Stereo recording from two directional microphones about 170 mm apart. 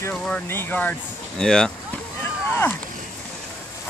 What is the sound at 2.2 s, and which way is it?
Rowboat, 10° left (ahead or behind).